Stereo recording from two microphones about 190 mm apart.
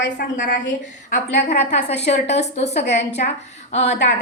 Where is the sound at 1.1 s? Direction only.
40° left (ahead or behind).